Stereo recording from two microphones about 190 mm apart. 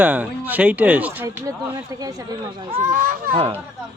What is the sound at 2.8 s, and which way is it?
Speech, 45° right (ahead or behind).